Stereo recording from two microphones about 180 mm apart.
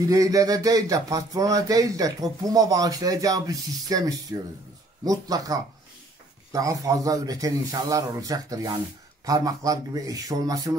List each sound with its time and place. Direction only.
0.1 s speech: 20° right (ahead or behind)